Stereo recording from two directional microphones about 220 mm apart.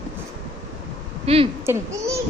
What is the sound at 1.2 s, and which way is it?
Speech, 25° right (ahead or behind).